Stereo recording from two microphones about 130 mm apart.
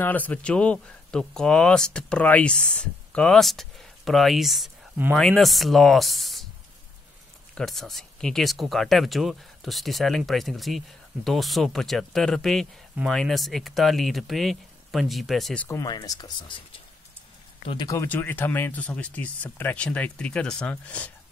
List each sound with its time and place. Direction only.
0.0 s a man's voice: 15° left (ahead or behind)
7.5 s speech: centre (ahead or behind)
15.8 s speech: 30° left (ahead or behind)
18.0 s a man's voice: 15° left (ahead or behind)